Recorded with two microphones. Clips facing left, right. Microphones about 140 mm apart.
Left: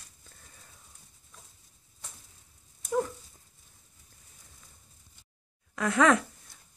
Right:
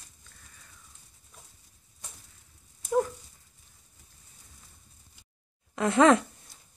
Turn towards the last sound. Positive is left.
turn(degrees=-25)  # may be behind; listen again after turning